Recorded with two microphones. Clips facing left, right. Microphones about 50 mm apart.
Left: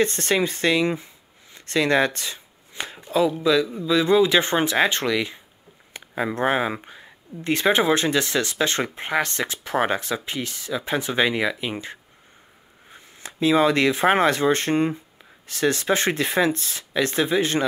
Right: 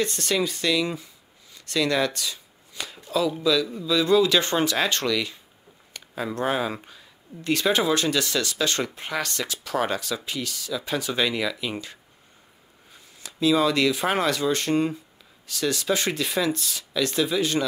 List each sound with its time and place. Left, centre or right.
0.0 s speech: left